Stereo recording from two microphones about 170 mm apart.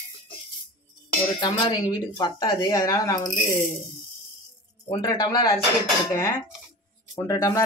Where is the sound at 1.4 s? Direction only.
25° left (ahead or behind).